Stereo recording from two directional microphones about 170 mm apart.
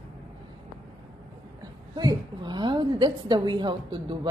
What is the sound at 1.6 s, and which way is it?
A woman's voice, 20° right (ahead or behind).